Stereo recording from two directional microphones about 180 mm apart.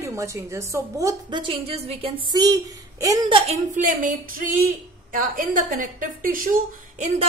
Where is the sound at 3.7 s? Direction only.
45° right (ahead or behind).